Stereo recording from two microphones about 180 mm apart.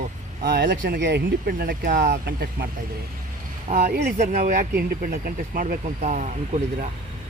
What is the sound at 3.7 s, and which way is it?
Speech, 65° right (ahead or behind).